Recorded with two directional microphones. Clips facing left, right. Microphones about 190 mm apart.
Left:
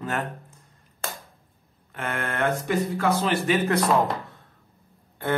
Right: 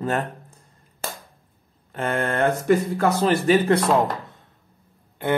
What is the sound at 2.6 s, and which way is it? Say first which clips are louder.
A man's voice: right 4 dB; 45° right (ahead or behind).